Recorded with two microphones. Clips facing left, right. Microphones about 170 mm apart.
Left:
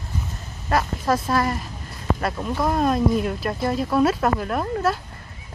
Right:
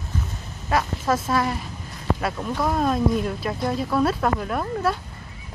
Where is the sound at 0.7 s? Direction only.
Centre (ahead or behind).